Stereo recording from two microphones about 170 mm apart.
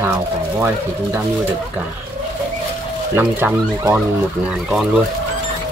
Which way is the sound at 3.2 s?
10° right (ahead or behind).